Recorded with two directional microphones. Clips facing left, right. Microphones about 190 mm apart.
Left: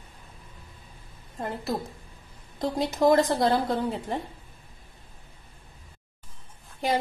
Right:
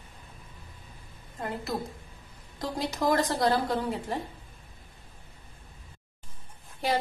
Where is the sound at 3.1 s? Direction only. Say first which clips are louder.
Left 4 dB; 25° left (ahead or behind).